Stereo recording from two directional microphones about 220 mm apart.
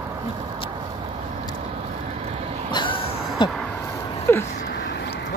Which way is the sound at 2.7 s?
20° left (ahead or behind).